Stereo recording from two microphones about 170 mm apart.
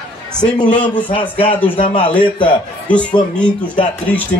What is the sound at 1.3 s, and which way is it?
Speech, 10° left (ahead or behind).